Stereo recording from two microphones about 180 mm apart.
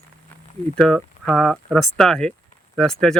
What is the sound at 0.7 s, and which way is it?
Speech, centre (ahead or behind).